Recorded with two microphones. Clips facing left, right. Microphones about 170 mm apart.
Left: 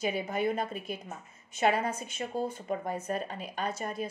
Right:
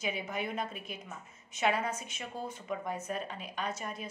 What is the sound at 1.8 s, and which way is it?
A woman's voice, 30° left (ahead or behind).